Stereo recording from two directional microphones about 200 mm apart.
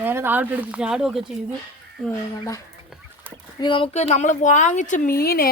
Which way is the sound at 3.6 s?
25° left (ahead or behind).